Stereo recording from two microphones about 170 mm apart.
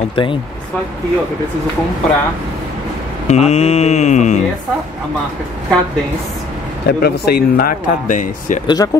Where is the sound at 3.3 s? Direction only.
40° left (ahead or behind).